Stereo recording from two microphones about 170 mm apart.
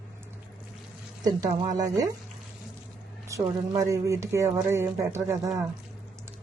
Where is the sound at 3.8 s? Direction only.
15° right (ahead or behind).